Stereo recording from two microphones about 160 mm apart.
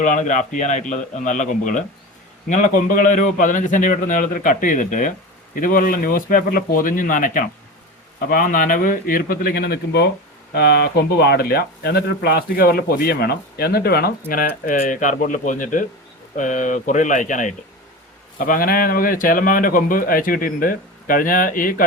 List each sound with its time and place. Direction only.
0.0 s a man's voice: 50° left (ahead or behind)